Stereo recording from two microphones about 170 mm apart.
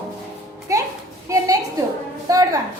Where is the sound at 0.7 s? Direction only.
20° right (ahead or behind).